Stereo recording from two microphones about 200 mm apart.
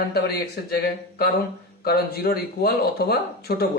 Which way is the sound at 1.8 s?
50° left (ahead or behind).